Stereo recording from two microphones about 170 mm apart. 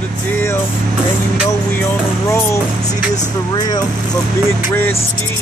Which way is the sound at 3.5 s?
20° left (ahead or behind).